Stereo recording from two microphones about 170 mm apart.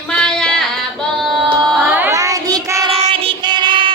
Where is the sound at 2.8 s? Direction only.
35° right (ahead or behind).